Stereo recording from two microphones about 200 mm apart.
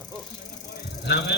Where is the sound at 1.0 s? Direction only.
55° left (ahead or behind).